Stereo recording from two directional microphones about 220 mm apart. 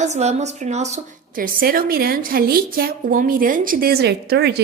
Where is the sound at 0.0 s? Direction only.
30° right (ahead or behind).